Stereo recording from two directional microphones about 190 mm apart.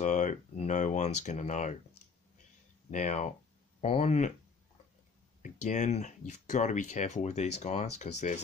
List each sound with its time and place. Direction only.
0.0 s speech: 40° left (ahead or behind)
2.9 s speech: 40° left (ahead or behind)
5.4 s speech: 40° left (ahead or behind)